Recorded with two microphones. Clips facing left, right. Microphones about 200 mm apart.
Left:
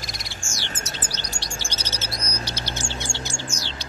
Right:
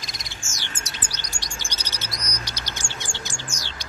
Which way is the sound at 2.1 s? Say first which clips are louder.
Left 2 dB; 30° left (ahead or behind).